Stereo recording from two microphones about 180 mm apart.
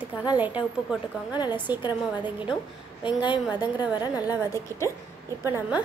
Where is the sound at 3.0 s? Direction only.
25° left (ahead or behind).